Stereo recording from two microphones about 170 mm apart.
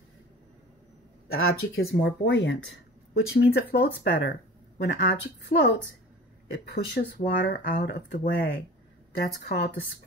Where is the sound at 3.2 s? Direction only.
70° left (ahead or behind); by 5.8 s 90° left.